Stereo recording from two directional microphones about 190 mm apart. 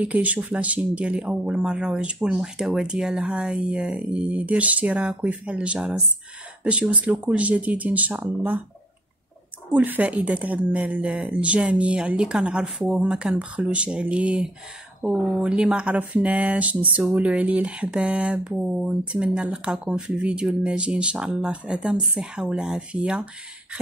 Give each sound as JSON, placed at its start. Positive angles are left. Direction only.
{"t": 0.0, "sound": "speech", "side_deg": -5}
{"t": 9.7, "sound": "speech", "side_deg": -10}